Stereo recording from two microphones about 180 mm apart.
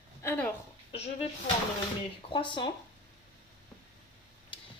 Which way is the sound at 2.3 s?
25° left (ahead or behind).